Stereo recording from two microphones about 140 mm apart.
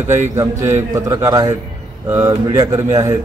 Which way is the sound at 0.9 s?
25° right (ahead or behind).